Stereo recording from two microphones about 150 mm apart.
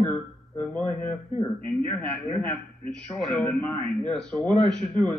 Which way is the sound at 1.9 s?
5° left (ahead or behind).